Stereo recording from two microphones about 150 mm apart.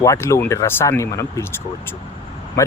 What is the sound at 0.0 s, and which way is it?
Speech, 20° left (ahead or behind).